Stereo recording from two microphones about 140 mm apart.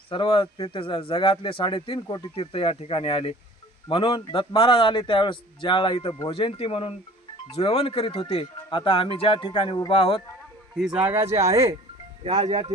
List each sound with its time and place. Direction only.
0.1 s a man's voice: 40° left (ahead or behind)
10.8 s speech: 5° right (ahead or behind); by 11.7 s 20° right (ahead or behind)